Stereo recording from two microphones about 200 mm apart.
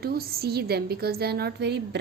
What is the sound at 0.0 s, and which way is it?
A woman's voice, 50° right (ahead or behind).